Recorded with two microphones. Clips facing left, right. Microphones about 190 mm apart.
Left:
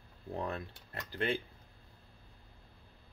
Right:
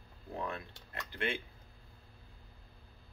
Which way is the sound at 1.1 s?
40° left (ahead or behind).